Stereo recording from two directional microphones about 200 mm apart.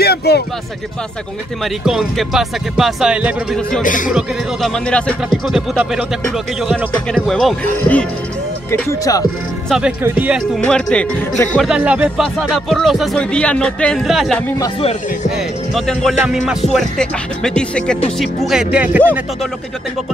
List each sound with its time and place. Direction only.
0.0 s a sound: 55° left (ahead or behind)
1.6 s speech: centre (ahead or behind)
3.8 s speech: 40° left (ahead or behind)
4.1 s speech: centre (ahead or behind)
9.7 s speech: 5° right (ahead or behind)
11.7 s speech: 5° right (ahead or behind)